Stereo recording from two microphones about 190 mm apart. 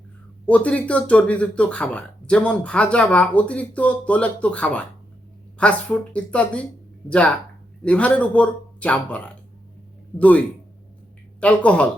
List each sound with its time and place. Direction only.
0.4 s speech: 5° left (ahead or behind)